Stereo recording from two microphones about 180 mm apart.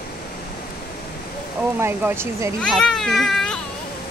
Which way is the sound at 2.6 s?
Centre (ahead or behind).